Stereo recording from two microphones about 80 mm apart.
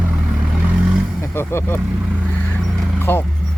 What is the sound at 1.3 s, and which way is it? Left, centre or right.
Speech, left.